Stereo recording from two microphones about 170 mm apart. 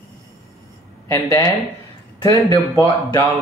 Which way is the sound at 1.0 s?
20° left (ahead or behind).